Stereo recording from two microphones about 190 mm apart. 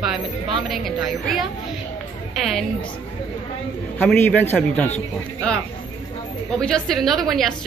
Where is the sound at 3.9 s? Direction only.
10° left (ahead or behind).